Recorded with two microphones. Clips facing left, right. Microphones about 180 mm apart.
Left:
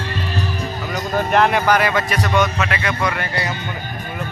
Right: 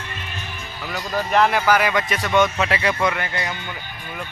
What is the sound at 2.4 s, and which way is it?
Speech, 30° right (ahead or behind).